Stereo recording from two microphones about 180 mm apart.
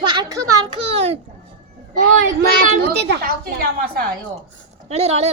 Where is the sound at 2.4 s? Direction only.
70° right (ahead or behind).